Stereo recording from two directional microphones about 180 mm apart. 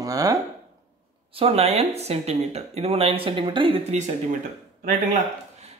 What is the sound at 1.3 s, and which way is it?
Speech, 35° right (ahead or behind).